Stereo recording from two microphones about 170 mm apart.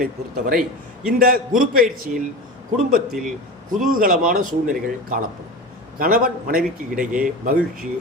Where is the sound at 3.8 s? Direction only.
55° right (ahead or behind).